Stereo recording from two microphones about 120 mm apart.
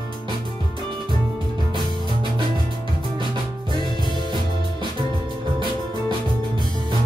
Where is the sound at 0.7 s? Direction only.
45° right (ahead or behind).